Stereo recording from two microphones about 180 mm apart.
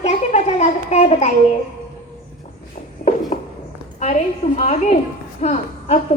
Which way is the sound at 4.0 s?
40° left (ahead or behind).